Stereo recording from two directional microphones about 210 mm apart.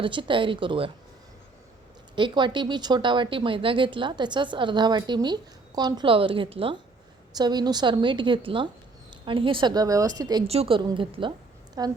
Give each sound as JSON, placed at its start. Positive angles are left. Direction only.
{"t": 0.0, "sound": "speech", "side_deg": -25}
{"t": 2.1, "sound": "a woman's voice", "side_deg": -20}